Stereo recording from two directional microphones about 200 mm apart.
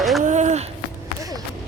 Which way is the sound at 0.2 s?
40° right (ahead or behind).